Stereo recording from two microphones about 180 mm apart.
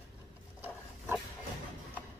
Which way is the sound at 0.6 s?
10° right (ahead or behind).